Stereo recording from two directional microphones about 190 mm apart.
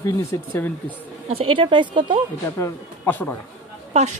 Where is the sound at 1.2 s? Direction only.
30° right (ahead or behind).